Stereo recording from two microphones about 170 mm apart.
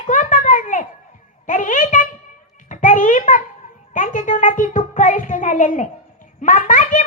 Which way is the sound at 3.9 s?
50° left (ahead or behind).